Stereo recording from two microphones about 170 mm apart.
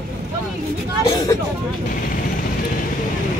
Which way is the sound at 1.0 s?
25° left (ahead or behind).